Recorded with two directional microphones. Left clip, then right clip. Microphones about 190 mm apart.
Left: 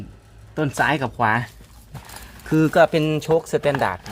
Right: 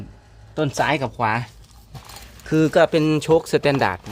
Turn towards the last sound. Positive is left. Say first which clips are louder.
# right 1 dB
turn(degrees=-35)  # may be behind; listen again after turning